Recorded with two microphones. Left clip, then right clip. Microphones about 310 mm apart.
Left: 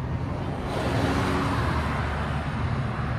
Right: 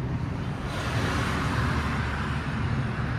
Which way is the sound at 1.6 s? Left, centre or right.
Left.